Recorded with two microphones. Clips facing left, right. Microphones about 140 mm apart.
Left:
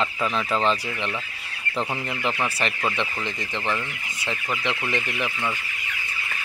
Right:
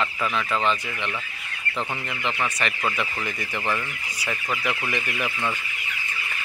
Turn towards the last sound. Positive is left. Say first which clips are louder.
# left 1 dB
turn(degrees=20)  # may be behind; listen again after turning